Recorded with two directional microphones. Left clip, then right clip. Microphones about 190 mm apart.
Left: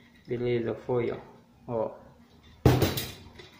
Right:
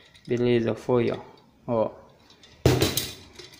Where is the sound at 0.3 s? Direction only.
50° right (ahead or behind).